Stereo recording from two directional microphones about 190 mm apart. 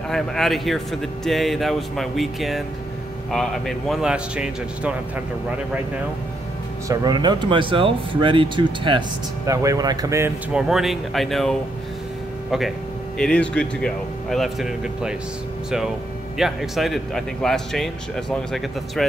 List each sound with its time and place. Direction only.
0.1 s speech: centre (ahead or behind)
6.9 s speech: 20° right (ahead or behind)
10.7 s speech: centre (ahead or behind)
16.3 s speech: centre (ahead or behind)